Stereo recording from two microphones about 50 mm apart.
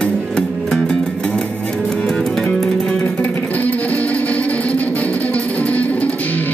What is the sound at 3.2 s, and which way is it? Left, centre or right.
Music, left.